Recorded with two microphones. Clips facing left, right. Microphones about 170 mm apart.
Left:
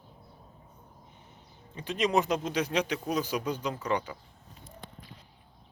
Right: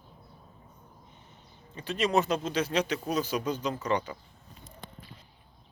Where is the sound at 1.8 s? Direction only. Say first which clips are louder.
Even; 15° left (ahead or behind).